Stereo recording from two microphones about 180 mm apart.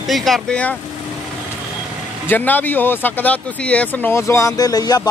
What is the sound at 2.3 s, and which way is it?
Speech, 10° left (ahead or behind).